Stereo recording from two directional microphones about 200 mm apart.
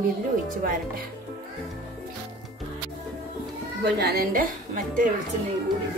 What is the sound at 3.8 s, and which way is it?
A woman's voice, 55° right (ahead or behind).